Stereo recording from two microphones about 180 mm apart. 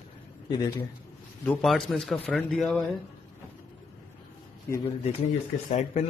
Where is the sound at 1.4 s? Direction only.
5° left (ahead or behind).